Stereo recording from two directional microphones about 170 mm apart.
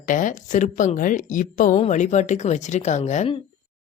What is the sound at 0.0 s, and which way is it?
Speech, 50° left (ahead or behind).